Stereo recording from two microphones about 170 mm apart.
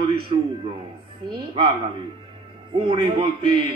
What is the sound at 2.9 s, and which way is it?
Speech, 30° right (ahead or behind).